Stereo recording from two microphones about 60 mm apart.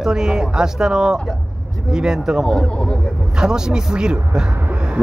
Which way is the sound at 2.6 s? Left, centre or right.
Centre.